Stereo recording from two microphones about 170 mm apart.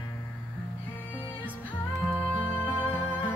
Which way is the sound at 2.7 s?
30° left (ahead or behind).